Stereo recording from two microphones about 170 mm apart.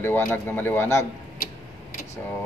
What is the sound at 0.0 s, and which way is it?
A man's voice, 10° left (ahead or behind).